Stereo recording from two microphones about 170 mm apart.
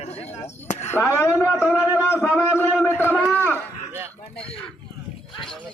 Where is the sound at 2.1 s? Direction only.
15° left (ahead or behind).